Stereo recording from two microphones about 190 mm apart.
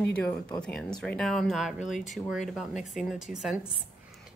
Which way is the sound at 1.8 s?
40° left (ahead or behind).